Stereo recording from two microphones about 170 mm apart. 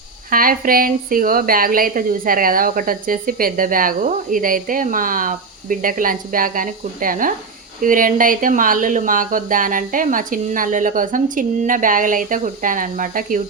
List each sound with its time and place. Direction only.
0.3 s a woman's voice: 55° right (ahead or behind)